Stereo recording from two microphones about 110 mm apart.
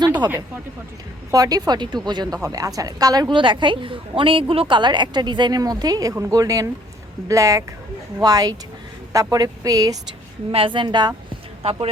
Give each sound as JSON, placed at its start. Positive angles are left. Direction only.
{"t": 1.3, "sound": "a woman's voice", "side_deg": -35}
{"t": 10.5, "sound": "a woman's voice", "side_deg": -50}
{"t": 11.6, "sound": "music", "side_deg": -55}